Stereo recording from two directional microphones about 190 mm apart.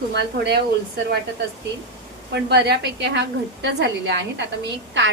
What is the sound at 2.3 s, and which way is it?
A woman's voice, 65° right (ahead or behind).